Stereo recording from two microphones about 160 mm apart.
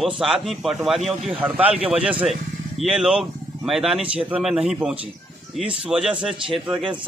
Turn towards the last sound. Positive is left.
turn(degrees=-5)  # may be behind; listen again after turning